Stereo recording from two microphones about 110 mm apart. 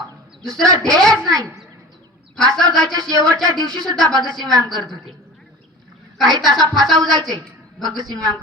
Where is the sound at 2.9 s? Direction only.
35° right (ahead or behind).